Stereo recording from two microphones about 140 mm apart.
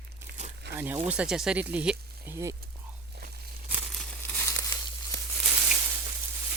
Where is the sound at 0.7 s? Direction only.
15° right (ahead or behind).